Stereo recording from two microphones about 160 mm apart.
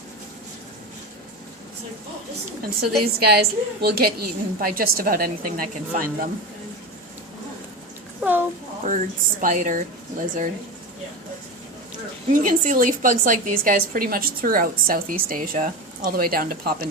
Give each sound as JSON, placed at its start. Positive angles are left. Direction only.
{"t": 3.2, "sound": "a woman's voice", "side_deg": -85}
{"t": 8.2, "sound": "a sound", "side_deg": -10}
{"t": 8.8, "sound": "speech", "side_deg": -55}
{"t": 12.3, "sound": "a woman's voice", "side_deg": -55}